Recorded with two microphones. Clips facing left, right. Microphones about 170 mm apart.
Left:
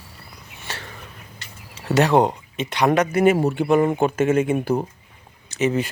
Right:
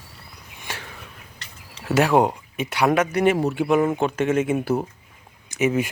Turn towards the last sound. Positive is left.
turn(degrees=-10)  # may be behind; listen again after turning